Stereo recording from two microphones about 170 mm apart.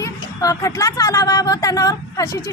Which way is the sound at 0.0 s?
20° left (ahead or behind).